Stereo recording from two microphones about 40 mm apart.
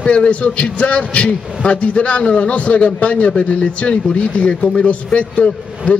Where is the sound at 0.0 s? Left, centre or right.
Left.